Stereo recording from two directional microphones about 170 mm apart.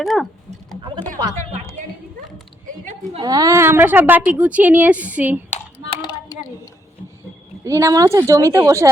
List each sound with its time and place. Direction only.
0.0 s speech: centre (ahead or behind)
3.2 s a woman's voice: 25° right (ahead or behind)
5.9 s a sound: 25° left (ahead or behind)
7.6 s a woman's voice: 20° right (ahead or behind)